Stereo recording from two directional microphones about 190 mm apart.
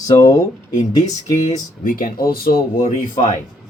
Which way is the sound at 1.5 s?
45° left (ahead or behind).